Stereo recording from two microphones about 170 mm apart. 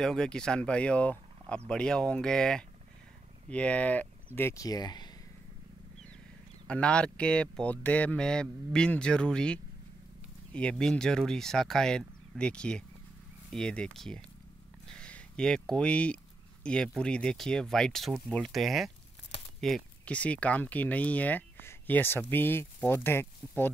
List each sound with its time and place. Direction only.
0.0 s speech: 5° left (ahead or behind); by 5.1 s 25° left (ahead or behind)
6.7 s speech: 5° left (ahead or behind)
14.9 s a sound: 5° left (ahead or behind)
16.6 s speech: 5° left (ahead or behind)